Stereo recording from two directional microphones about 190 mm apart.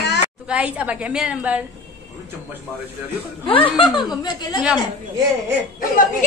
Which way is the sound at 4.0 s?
20° left (ahead or behind).